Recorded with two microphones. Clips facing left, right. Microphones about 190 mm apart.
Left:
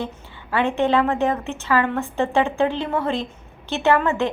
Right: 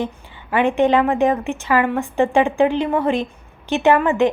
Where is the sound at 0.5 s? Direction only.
15° right (ahead or behind).